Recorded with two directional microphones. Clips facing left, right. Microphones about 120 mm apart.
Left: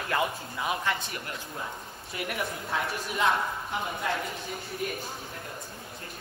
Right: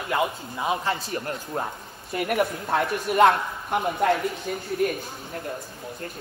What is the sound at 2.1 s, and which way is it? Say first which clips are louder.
Speech: right 9 dB; 55° right (ahead or behind).